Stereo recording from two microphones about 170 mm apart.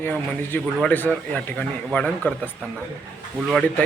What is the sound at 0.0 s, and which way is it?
A man's voice, 10° left (ahead or behind).